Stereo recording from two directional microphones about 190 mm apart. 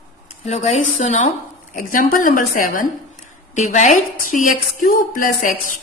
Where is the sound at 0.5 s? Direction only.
35° left (ahead or behind).